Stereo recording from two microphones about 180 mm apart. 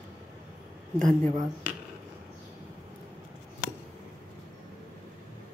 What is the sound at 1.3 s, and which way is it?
Speech, 20° right (ahead or behind).